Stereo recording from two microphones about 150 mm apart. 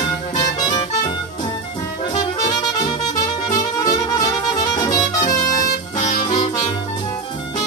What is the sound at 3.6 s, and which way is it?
Music, 25° left (ahead or behind).